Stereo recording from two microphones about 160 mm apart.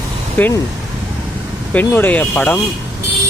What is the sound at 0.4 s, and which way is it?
Speech, 10° left (ahead or behind).